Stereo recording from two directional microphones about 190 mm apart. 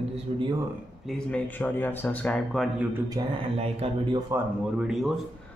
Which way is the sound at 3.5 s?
30° right (ahead or behind).